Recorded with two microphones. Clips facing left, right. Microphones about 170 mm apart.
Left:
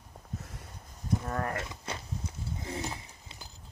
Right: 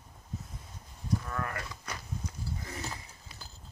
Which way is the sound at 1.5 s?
25° left (ahead or behind).